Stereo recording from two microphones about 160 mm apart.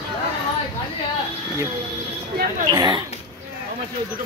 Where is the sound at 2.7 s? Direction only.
25° right (ahead or behind).